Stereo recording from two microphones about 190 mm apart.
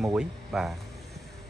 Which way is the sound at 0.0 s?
Centre (ahead or behind).